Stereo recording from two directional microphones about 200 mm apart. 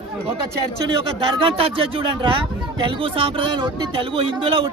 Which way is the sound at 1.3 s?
25° right (ahead or behind).